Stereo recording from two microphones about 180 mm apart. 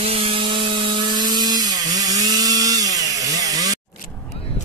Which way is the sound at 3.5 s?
20° right (ahead or behind).